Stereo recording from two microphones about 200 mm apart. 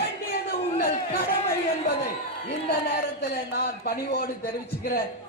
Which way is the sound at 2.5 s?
50° left (ahead or behind).